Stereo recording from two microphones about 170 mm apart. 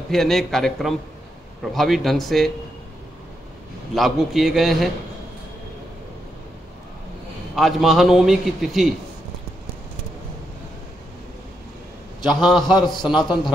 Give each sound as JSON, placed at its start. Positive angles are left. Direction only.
{"t": 0.1, "sound": "a man's voice", "side_deg": 0}
{"t": 3.9, "sound": "a man's voice", "side_deg": 0}
{"t": 7.5, "sound": "a man's voice", "side_deg": 0}
{"t": 12.5, "sound": "speech", "side_deg": 25}